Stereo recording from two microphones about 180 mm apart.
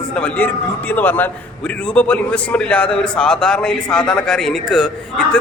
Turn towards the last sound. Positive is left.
turn(degrees=5)  # may be behind; listen again after turning